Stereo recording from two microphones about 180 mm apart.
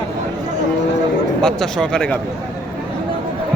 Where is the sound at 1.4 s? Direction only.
5° left (ahead or behind).